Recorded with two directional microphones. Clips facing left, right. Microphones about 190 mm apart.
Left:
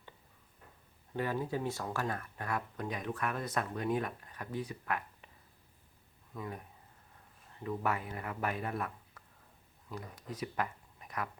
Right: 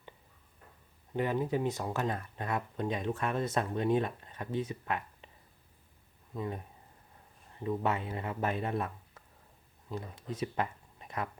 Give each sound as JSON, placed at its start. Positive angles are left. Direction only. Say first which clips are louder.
{"t": 1.1, "sound": "speech", "louder": "right 4 dB", "side_deg": -20}
{"t": 6.3, "sound": "speech", "louder": "right 5 dB", "side_deg": -25}
{"t": 7.6, "sound": "speech", "louder": "right 3 dB", "side_deg": -25}